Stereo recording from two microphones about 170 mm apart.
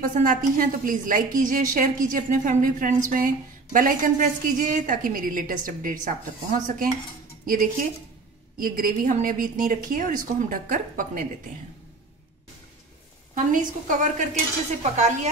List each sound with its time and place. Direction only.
0.0 s a woman's voice: 55° right (ahead or behind)
8.6 s a woman's voice: 55° right (ahead or behind)
13.3 s a woman's voice: 50° right (ahead or behind)